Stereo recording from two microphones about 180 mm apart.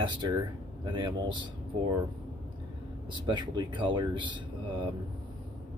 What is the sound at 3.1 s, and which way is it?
Speech, 25° right (ahead or behind).